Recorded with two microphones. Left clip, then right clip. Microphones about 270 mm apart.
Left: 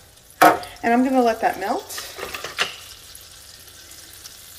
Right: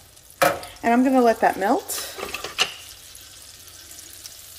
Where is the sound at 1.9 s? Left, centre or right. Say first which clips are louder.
Even; right.